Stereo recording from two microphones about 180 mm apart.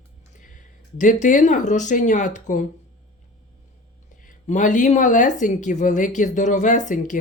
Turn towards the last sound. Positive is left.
turn(degrees=45)  # may be behind; listen again after turning